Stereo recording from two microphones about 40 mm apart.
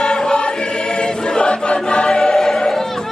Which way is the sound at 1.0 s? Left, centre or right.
Left.